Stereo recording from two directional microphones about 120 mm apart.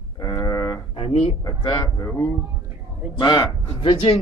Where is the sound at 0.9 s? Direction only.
50° left (ahead or behind).